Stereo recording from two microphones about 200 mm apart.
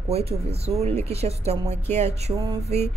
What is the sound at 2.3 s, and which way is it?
Mantra, 20° right (ahead or behind).